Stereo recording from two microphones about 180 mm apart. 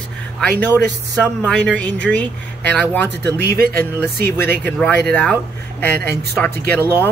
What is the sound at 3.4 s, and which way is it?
Speech, 60° right (ahead or behind).